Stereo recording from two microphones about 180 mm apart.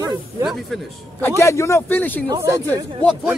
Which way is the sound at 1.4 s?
15° left (ahead or behind).